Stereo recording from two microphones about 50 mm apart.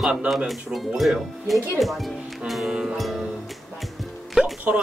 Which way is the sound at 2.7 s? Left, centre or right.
Centre.